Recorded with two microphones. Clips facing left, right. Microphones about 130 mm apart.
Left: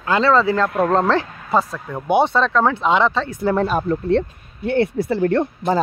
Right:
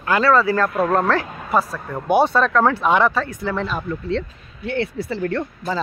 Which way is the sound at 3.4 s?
45° left (ahead or behind).